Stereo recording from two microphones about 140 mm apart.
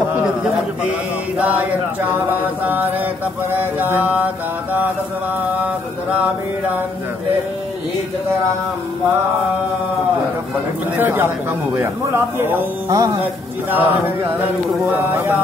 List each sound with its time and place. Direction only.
1.4 s speech: 10° right (ahead or behind)
3.5 s speech: 15° right (ahead or behind)
11.0 s speech: 15° right (ahead or behind)